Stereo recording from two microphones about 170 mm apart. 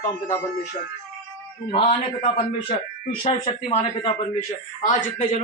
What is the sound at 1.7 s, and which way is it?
A man's voice, 35° left (ahead or behind).